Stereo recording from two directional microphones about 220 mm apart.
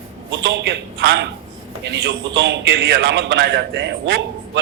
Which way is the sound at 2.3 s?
60° right (ahead or behind).